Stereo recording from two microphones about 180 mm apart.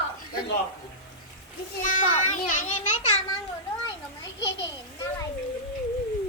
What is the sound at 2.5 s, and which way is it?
Speech, 45° left (ahead or behind).